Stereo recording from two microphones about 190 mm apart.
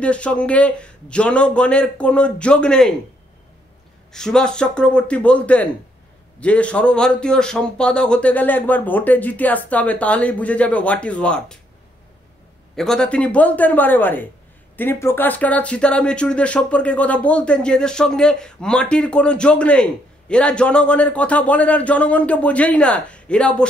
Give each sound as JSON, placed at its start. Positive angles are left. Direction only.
{"t": 0.0, "sound": "a man's voice", "side_deg": 5}
{"t": 4.1, "sound": "a man's voice", "side_deg": 5}
{"t": 12.7, "sound": "speech", "side_deg": 5}